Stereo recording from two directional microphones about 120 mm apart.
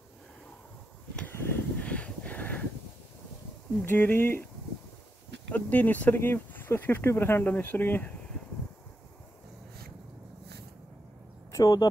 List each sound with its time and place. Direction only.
1.1 s a sound: 15° left (ahead or behind)
3.8 s speech: 15° left (ahead or behind)
5.5 s speech: 15° left (ahead or behind)
11.5 s speech: 35° left (ahead or behind)